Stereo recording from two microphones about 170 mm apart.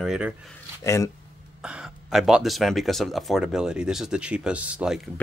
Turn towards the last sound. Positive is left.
turn(degrees=-5)  # may be behind; listen again after turning